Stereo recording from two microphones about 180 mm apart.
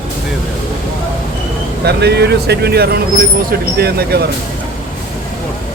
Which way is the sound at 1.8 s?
65° right (ahead or behind).